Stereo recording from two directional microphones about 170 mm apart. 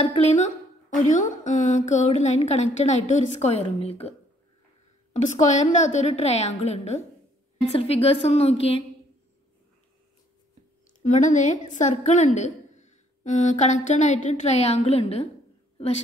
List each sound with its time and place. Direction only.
0.0 s a woman's voice: 40° left (ahead or behind)
5.1 s a woman's voice: 45° left (ahead or behind)
11.0 s a woman's voice: 45° left (ahead or behind)